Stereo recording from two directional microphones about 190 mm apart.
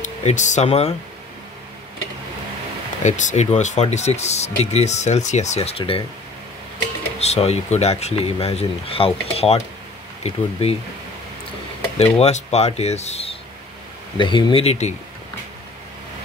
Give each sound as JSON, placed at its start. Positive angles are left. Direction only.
{"t": 0.0, "sound": "speech", "side_deg": 40}
{"t": 3.0, "sound": "speech", "side_deg": 40}
{"t": 7.2, "sound": "speech", "side_deg": 35}
{"t": 12.0, "sound": "speech", "side_deg": 35}